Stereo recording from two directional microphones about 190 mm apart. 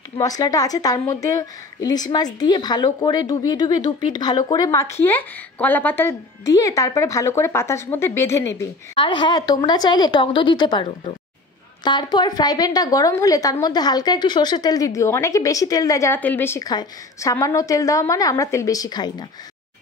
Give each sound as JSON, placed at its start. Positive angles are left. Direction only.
{"t": 0.2, "sound": "a woman's voice", "side_deg": 20}
{"t": 8.9, "sound": "a woman's voice", "side_deg": 25}